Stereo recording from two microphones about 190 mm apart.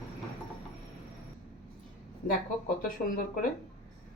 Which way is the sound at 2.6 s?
45° left (ahead or behind).